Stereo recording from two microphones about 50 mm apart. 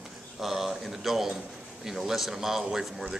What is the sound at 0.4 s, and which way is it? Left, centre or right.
Speech, centre.